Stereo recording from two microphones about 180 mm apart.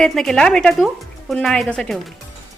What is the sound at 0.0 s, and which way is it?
Speech, centre (ahead or behind).